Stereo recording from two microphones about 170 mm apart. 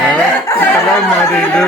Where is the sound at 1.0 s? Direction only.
5° left (ahead or behind).